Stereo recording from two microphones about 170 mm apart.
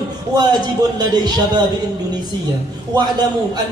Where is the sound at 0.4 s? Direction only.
25° right (ahead or behind).